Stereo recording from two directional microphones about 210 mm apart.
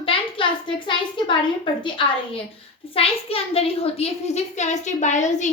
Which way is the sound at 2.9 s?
25° left (ahead or behind).